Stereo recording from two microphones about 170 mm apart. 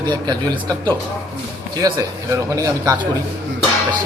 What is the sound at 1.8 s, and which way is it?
A man's voice, 20° right (ahead or behind).